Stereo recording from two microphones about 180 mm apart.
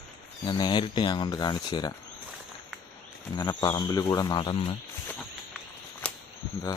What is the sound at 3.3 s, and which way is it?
Speech, 20° left (ahead or behind).